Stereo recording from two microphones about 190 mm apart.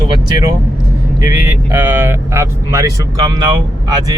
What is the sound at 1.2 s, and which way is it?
Speech, 15° right (ahead or behind).